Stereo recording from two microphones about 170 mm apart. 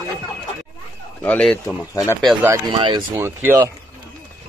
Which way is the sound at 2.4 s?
20° right (ahead or behind).